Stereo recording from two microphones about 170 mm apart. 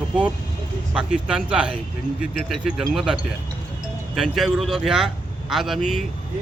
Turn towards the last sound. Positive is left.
turn(degrees=0)  # may be behind; listen again after turning